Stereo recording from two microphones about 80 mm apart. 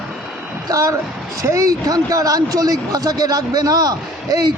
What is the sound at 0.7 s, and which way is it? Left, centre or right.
A man's voice, right.